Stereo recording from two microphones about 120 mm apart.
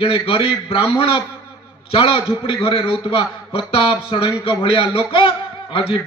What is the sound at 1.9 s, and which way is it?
A man's voice, 50° left (ahead or behind).